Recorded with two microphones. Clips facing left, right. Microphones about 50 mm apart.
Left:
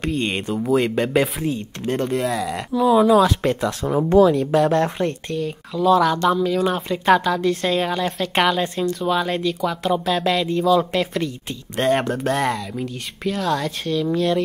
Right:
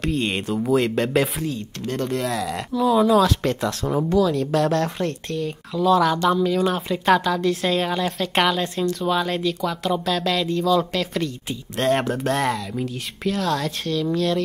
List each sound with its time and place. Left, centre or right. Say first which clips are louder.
0.0 s a woman's voice: even; centre
1.4 s speech: left 3 dB; left
2.0 s a woman's voice: left 2 dB; centre